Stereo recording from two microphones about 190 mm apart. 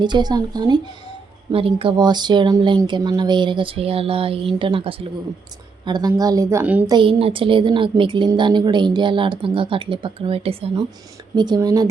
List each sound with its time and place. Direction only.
0.0 s a woman's voice: 25° right (ahead or behind)
6.8 s a woman's voice: 25° right (ahead or behind)